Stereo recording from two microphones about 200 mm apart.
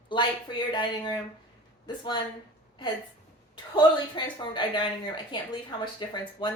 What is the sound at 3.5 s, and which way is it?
Speech, 25° left (ahead or behind).